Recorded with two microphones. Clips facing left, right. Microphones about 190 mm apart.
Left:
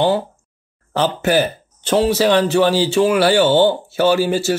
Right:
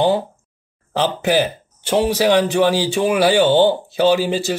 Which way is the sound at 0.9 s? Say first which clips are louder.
Left 1 dB; 15° right (ahead or behind).